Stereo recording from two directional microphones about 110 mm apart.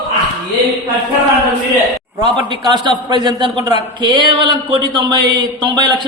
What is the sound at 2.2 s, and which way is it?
A man's voice, 45° right (ahead or behind).